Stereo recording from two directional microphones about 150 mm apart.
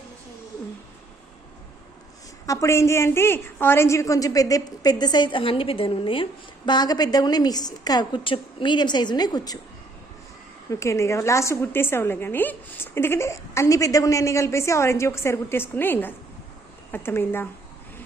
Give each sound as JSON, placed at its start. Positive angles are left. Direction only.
{"t": 2.5, "sound": "a woman's voice", "side_deg": 20}
{"t": 10.7, "sound": "a woman's voice", "side_deg": 20}